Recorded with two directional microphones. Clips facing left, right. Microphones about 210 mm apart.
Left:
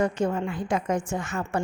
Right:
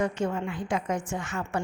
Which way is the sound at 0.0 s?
40° left (ahead or behind).